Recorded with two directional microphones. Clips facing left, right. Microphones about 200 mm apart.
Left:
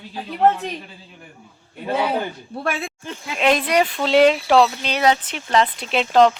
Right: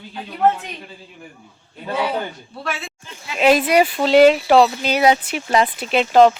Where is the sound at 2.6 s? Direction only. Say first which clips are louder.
Left 3 dB; 55° left (ahead or behind).